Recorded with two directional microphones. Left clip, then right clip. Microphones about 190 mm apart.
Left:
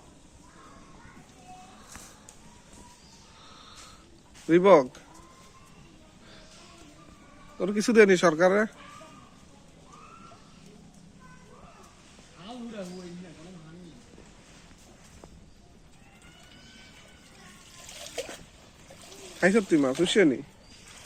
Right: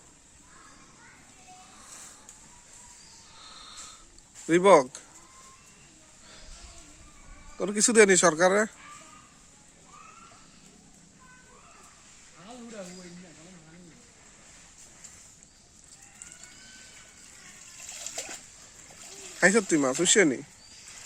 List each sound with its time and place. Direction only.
3.4 s a sound: 10° right (ahead or behind)
4.4 s speech: 30° right (ahead or behind)
7.6 s speech: 25° right (ahead or behind)
17.9 s splash: 10° left (ahead or behind)
19.4 s speech: 30° right (ahead or behind)